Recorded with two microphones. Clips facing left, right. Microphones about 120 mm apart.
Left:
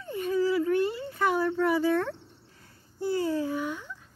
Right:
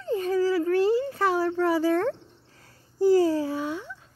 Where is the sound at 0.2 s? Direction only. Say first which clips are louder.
Even; 35° right (ahead or behind).